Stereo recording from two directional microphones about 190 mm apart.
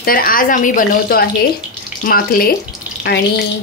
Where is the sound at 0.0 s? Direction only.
50° left (ahead or behind).